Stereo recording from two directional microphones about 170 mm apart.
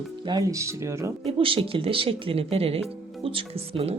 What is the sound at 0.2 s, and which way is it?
Speech, 25° right (ahead or behind).